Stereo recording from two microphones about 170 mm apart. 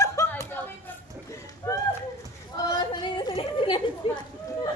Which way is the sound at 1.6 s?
15° left (ahead or behind).